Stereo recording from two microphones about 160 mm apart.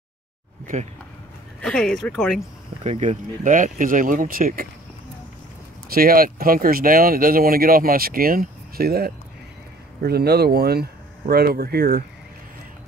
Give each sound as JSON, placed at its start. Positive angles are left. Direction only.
{"t": 1.6, "sound": "speech", "side_deg": 5}
{"t": 2.8, "sound": "speech", "side_deg": -40}
{"t": 5.9, "sound": "speech", "side_deg": -65}
{"t": 10.0, "sound": "speech", "side_deg": -85}